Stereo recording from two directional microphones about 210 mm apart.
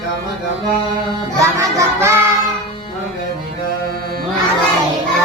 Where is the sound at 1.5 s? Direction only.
15° right (ahead or behind).